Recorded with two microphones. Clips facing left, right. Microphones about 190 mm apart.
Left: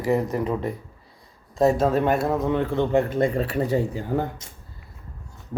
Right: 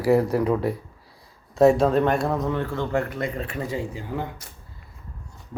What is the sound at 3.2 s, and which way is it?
Speech, 35° left (ahead or behind).